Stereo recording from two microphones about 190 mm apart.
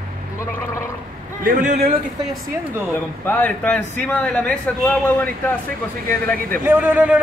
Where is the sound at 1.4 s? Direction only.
45° right (ahead or behind).